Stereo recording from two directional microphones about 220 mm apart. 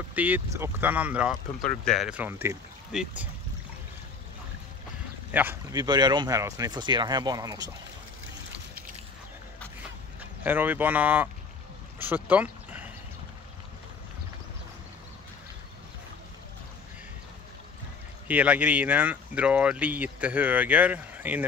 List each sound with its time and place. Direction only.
0.1 s speech: 5° right (ahead or behind)
5.3 s speech: 10° right (ahead or behind)
10.4 s speech: 10° right (ahead or behind)
12.0 s a sound: 10° right (ahead or behind)
18.3 s speech: 5° right (ahead or behind)